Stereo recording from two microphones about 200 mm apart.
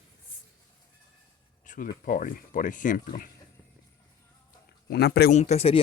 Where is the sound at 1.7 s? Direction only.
40° left (ahead or behind).